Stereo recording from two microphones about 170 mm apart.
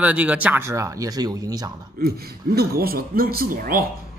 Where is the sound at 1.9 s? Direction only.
65° right (ahead or behind).